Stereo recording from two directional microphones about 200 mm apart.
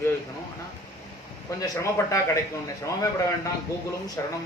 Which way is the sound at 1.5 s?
15° left (ahead or behind).